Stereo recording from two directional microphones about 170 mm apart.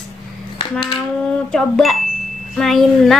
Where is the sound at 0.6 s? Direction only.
25° left (ahead or behind).